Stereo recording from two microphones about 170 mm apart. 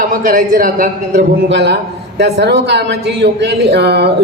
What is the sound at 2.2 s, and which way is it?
A man's voice, 80° right.